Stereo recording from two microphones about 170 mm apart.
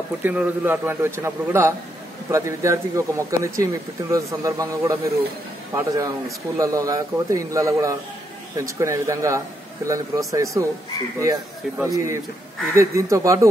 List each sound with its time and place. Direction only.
0.2 s a man's voice: 10° right (ahead or behind)
11.8 s a man's voice: 15° right (ahead or behind)